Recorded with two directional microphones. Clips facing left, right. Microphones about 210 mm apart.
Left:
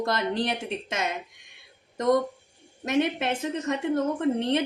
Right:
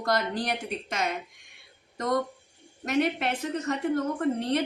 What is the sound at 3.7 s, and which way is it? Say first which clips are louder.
Speech: left 2 dB; 25° left (ahead or behind).